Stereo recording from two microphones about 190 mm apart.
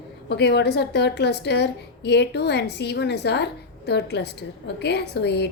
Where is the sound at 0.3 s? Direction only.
60° left (ahead or behind).